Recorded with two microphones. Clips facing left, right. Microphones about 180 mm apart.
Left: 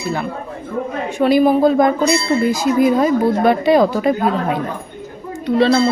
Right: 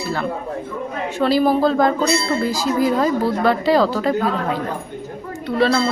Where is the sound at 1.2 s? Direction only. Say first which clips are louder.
Left 4 dB; 15° left (ahead or behind).